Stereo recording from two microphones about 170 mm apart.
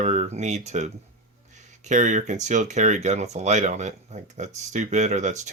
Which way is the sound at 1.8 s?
45° right (ahead or behind).